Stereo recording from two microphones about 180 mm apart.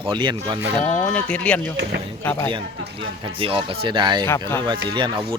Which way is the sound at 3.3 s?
30° right (ahead or behind).